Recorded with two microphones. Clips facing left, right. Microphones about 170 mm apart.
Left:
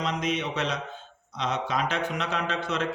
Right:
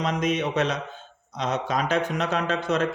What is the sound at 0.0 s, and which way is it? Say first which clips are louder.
A man's voice: right 4 dB; 50° right (ahead or behind).